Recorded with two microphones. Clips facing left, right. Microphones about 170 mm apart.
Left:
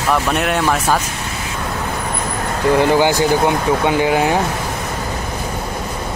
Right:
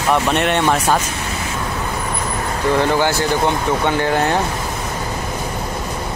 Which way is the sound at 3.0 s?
15° left (ahead or behind).